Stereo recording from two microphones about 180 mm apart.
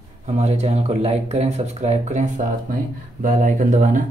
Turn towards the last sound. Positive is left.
turn(degrees=-45)  # may be behind; listen again after turning